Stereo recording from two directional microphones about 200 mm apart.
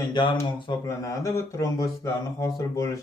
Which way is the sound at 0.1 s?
20° left (ahead or behind).